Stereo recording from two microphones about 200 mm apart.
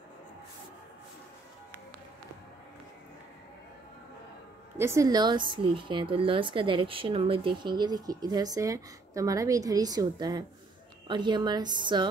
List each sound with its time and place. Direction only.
4.7 s a woman's voice: 15° right (ahead or behind)